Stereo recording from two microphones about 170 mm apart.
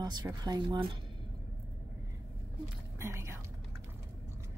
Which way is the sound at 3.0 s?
15° right (ahead or behind).